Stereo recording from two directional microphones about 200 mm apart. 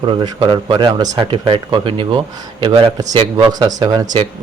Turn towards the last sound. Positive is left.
turn(degrees=-20)  # may be behind; listen again after turning